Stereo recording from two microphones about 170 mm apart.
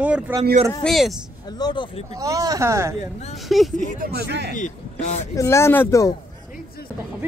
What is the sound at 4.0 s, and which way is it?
Speech, 75° right (ahead or behind).